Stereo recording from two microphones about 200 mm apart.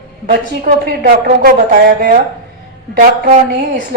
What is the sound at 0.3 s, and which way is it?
A woman's voice, 45° right (ahead or behind).